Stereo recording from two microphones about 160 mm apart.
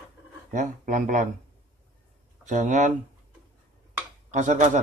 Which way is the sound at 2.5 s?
50° right (ahead or behind).